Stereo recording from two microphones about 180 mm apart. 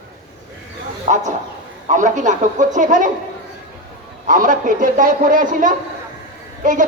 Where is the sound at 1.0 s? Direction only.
40° right (ahead or behind).